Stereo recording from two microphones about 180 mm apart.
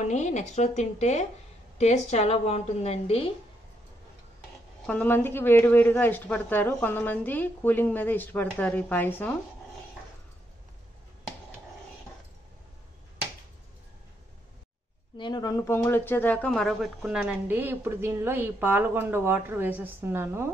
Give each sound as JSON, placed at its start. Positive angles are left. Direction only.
{"t": 0.0, "sound": "a woman's voice", "side_deg": 40}
{"t": 4.8, "sound": "speech", "side_deg": 10}
{"t": 15.1, "sound": "speech", "side_deg": 25}